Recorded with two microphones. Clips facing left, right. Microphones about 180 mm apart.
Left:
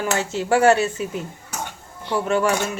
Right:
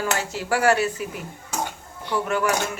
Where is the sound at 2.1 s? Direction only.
25° left (ahead or behind).